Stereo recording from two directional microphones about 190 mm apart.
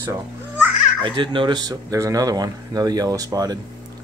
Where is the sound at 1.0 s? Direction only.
25° right (ahead or behind).